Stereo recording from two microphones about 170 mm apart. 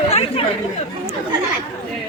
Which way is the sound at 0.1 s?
35° left (ahead or behind).